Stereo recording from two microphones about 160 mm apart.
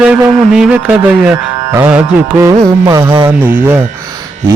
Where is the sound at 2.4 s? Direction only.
20° right (ahead or behind).